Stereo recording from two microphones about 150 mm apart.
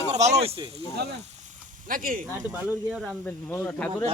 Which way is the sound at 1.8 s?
70° right (ahead or behind).